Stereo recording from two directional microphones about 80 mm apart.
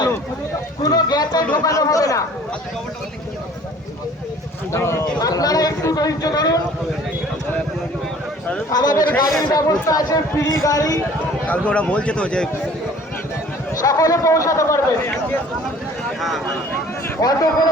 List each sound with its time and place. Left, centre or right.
0.8 s run: left
1.6 s chatter: left
4.7 s speech: left
5.2 s a man's voice: left
8.7 s a man's voice: left
11.4 s a man's voice: centre
13.8 s a man's voice: left
17.2 s a man's voice: left